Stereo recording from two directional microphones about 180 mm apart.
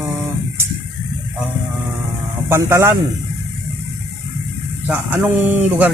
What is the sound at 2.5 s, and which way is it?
Speech, 15° right (ahead or behind).